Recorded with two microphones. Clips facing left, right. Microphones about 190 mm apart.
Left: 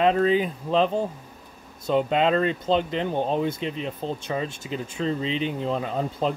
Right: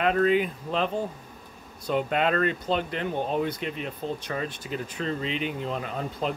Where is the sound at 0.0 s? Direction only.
30° left (ahead or behind).